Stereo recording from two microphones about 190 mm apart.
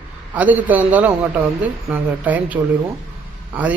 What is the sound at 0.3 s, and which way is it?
Speech, 10° right (ahead or behind).